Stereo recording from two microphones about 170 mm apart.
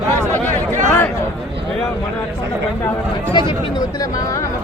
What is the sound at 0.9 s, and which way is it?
Speech, 15° left (ahead or behind).